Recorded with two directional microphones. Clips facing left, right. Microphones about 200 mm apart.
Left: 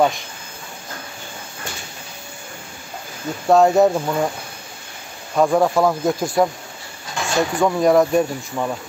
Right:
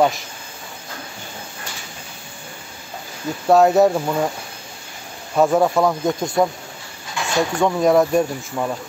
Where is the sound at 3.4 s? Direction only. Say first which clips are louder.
Even; centre (ahead or behind).